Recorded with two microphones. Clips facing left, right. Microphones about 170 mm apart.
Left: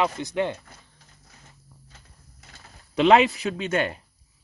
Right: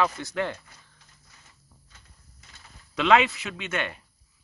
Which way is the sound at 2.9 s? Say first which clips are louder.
Left 4 dB; 30° left (ahead or behind).